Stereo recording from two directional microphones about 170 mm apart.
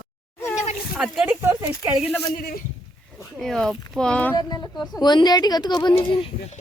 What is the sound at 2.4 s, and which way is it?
Speech, 60° left (ahead or behind).